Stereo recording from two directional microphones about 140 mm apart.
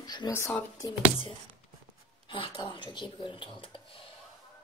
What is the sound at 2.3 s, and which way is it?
Speech, 35° left (ahead or behind).